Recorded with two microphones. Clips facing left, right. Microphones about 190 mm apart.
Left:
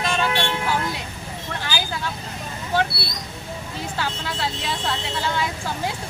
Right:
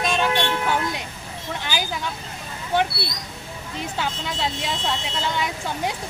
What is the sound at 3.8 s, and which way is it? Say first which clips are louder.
Speech: right 1 dB; 20° right (ahead or behind).